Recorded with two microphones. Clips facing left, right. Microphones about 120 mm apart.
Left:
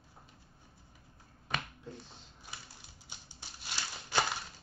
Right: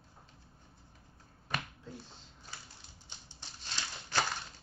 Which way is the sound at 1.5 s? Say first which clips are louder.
Even; 5° right (ahead or behind).